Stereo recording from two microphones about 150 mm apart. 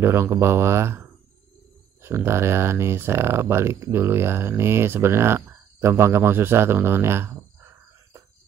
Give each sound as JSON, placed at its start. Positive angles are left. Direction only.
{"t": 0.0, "sound": "speech", "side_deg": -15}